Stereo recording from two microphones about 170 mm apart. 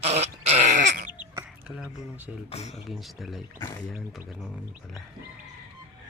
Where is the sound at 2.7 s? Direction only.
Centre (ahead or behind).